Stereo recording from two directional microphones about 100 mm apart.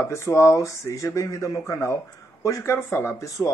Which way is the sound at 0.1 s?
30° left (ahead or behind).